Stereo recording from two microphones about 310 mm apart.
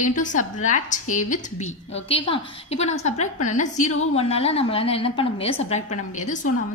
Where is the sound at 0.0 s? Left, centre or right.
Left.